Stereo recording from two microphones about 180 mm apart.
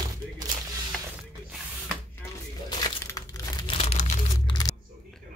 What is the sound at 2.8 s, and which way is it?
Crumpling, 20° left (ahead or behind).